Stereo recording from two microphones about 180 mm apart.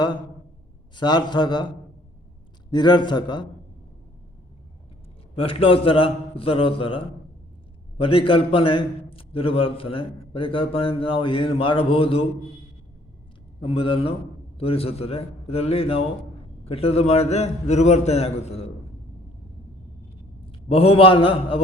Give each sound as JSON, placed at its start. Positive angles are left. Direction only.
{"t": 0.9, "sound": "a man's voice", "side_deg": 25}
{"t": 2.6, "sound": "a man's voice", "side_deg": 25}
{"t": 5.3, "sound": "a man's voice", "side_deg": 30}
{"t": 8.0, "sound": "a man's voice", "side_deg": 30}
{"t": 13.6, "sound": "a man's voice", "side_deg": 30}
{"t": 20.4, "sound": "a man's voice", "side_deg": 30}